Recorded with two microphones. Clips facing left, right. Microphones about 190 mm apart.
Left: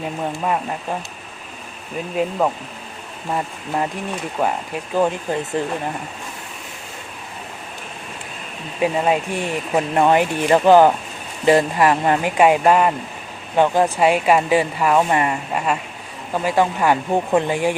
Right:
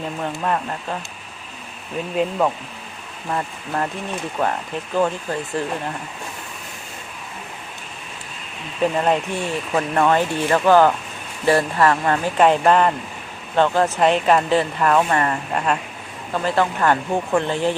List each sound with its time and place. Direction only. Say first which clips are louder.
0.2 s speech: left 1 dB; 10° left (ahead or behind)
3.3 s speech: left 1 dB; 15° left (ahead or behind)
8.8 s speech: even; 10° left (ahead or behind)